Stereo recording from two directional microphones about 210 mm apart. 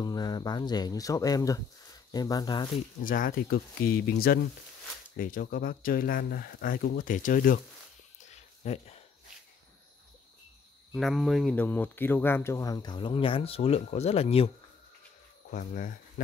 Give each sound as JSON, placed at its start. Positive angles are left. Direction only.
{"t": 0.0, "sound": "speech", "side_deg": 20}
{"t": 3.0, "sound": "speech", "side_deg": 40}
{"t": 8.3, "sound": "a sound", "side_deg": 30}
{"t": 10.9, "sound": "speech", "side_deg": 0}
{"t": 15.5, "sound": "speech", "side_deg": 40}